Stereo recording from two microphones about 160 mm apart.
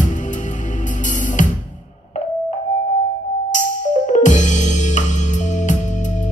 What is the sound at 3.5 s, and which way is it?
Music, 50° left (ahead or behind).